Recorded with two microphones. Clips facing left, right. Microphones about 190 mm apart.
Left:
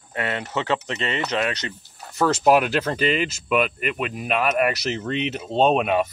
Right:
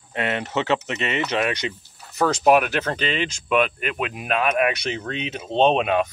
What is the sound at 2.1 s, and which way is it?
Speech, centre (ahead or behind).